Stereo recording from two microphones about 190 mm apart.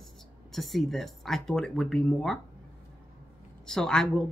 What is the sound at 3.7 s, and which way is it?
Speech, 5° left (ahead or behind).